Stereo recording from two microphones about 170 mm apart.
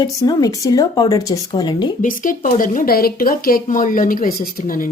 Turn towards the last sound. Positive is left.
turn(degrees=55)  # may be behind; listen again after turning